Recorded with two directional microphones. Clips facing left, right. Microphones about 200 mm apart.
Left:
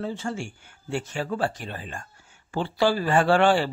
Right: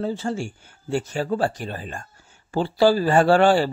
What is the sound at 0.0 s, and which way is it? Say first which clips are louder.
A man's voice: right 4 dB; 35° right (ahead or behind).